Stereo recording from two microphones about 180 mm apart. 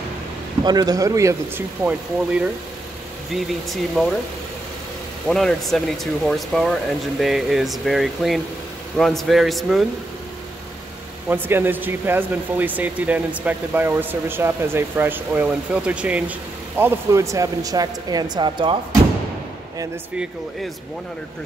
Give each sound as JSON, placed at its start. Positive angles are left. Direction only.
{"t": 0.7, "sound": "speech", "side_deg": -20}
{"t": 1.9, "sound": "speech", "side_deg": -5}
{"t": 5.3, "sound": "speech", "side_deg": 0}
{"t": 11.2, "sound": "speech", "side_deg": -10}